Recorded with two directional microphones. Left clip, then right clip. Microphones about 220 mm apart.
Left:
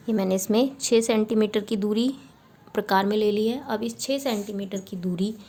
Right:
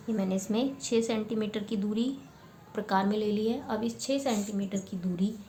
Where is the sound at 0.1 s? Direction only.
50° left (ahead or behind).